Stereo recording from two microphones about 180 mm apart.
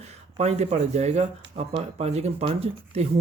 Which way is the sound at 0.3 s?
40° right (ahead or behind).